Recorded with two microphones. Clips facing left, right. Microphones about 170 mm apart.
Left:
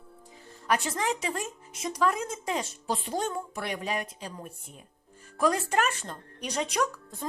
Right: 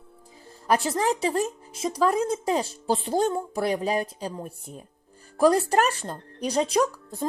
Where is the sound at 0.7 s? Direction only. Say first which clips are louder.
Right 5 dB; 35° right (ahead or behind).